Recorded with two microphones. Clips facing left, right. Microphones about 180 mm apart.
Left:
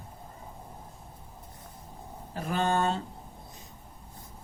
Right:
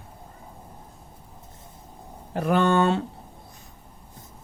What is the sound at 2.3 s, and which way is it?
Speech, 70° right (ahead or behind).